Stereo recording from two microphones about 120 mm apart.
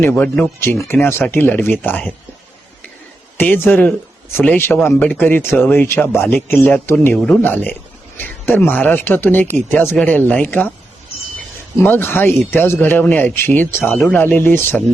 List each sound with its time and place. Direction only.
0.0 s a man's voice: 20° left (ahead or behind)
3.3 s a man's voice: 15° left (ahead or behind)
11.8 s a man's voice: 20° left (ahead or behind)